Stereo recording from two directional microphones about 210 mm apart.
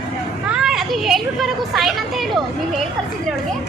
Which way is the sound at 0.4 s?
5° right (ahead or behind).